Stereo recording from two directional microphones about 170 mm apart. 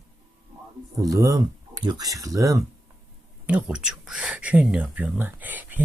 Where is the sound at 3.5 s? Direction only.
10° right (ahead or behind).